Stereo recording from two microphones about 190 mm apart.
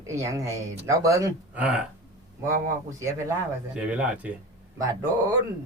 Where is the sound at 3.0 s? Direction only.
15° right (ahead or behind).